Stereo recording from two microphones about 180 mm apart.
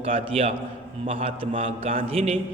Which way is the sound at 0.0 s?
35° right (ahead or behind).